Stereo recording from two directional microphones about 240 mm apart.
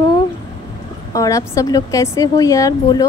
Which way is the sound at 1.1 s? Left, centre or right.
Centre.